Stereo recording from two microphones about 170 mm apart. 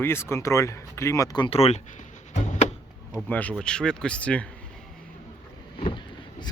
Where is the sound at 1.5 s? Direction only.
40° left (ahead or behind).